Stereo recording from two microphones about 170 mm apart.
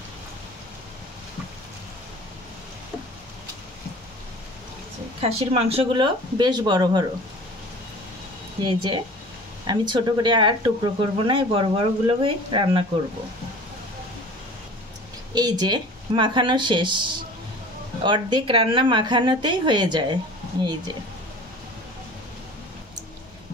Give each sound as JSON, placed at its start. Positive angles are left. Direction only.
{"t": 5.2, "sound": "speech", "side_deg": -35}
{"t": 8.6, "sound": "speech", "side_deg": -30}
{"t": 15.3, "sound": "speech", "side_deg": -25}